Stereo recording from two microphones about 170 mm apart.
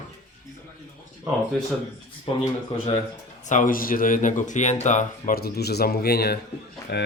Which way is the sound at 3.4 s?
50° left (ahead or behind).